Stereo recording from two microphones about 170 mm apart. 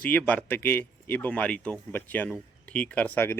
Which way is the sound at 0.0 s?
10° left (ahead or behind).